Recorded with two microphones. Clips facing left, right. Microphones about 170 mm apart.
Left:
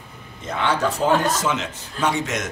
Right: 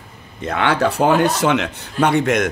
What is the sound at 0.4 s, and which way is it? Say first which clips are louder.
Speech: right 4 dB; 65° right (ahead or behind).